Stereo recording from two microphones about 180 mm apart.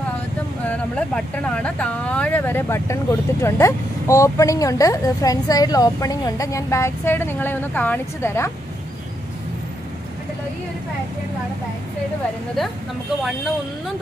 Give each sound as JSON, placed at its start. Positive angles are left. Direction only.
{"t": 0.7, "sound": "speech", "side_deg": 5}